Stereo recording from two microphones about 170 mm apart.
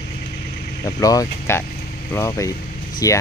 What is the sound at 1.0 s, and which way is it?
Speech, 20° left (ahead or behind).